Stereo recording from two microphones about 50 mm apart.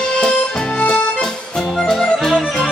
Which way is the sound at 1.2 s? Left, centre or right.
Centre.